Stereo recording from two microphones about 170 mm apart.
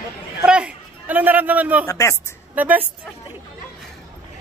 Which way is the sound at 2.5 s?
10° right (ahead or behind).